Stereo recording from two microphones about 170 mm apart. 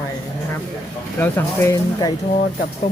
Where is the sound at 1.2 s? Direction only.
15° left (ahead or behind).